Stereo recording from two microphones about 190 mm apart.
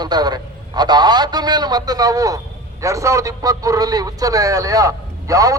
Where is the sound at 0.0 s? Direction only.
20° right (ahead or behind).